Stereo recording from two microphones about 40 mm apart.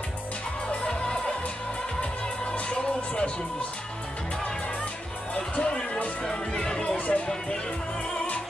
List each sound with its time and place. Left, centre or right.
0.7 s music: left
2.5 s music: left
5.3 s music: left
6.2 s speech: centre
6.8 s speech: left